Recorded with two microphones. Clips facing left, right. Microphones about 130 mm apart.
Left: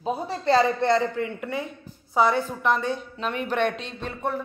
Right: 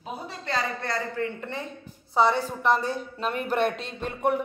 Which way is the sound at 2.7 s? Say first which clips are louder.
Right 1 dB; 40° right (ahead or behind).